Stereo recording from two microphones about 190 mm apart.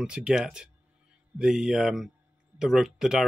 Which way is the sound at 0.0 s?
5° right (ahead or behind).